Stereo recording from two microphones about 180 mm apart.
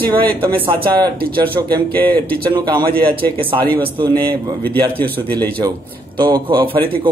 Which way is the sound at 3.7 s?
10° left (ahead or behind).